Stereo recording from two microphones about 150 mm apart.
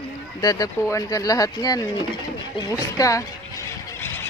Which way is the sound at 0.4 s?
25° left (ahead or behind).